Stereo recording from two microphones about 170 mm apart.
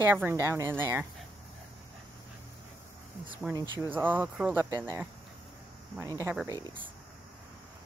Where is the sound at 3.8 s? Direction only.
10° right (ahead or behind).